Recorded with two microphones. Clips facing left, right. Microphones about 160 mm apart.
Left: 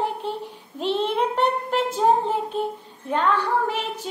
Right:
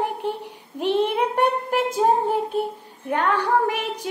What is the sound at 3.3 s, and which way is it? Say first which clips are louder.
Speech: right 2 dB; 15° right (ahead or behind).